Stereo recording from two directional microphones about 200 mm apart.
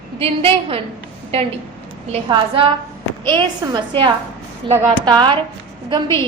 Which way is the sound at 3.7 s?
25° right (ahead or behind).